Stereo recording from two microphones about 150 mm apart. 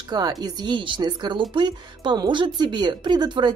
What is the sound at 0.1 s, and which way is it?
Speech, 25° right (ahead or behind).